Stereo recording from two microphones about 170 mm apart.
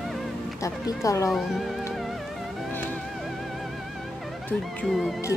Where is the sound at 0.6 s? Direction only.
20° left (ahead or behind).